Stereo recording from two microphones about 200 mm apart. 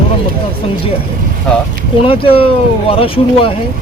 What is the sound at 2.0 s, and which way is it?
Speech, 25° left (ahead or behind).